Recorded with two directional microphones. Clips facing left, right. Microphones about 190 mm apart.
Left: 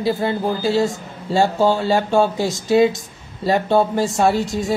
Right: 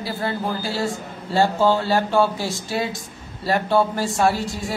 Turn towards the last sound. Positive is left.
turn(degrees=20)  # may be behind; listen again after turning